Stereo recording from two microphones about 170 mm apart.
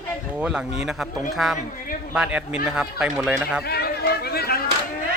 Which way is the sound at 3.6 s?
70° left (ahead or behind).